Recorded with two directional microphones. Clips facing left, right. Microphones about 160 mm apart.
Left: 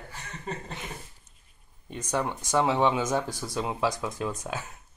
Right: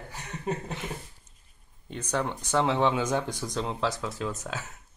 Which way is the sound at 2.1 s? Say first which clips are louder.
Left 1 dB; 10° left (ahead or behind).